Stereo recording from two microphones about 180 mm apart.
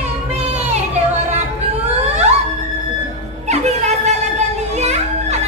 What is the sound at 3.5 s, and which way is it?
Music, 40° right (ahead or behind).